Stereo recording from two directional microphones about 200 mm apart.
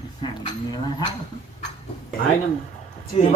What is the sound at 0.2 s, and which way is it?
Speech, 20° left (ahead or behind).